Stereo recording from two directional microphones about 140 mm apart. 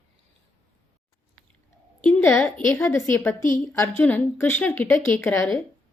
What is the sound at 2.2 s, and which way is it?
A woman's voice, 15° left (ahead or behind).